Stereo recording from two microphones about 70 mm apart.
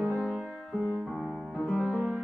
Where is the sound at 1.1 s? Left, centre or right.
Centre.